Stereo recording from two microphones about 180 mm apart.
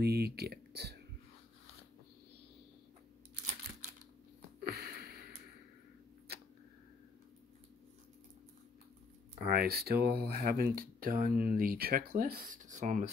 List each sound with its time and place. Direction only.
0.0 s speech: 60° right (ahead or behind)
4.6 s a sound: 60° right (ahead or behind)
9.5 s speech: 60° right (ahead or behind)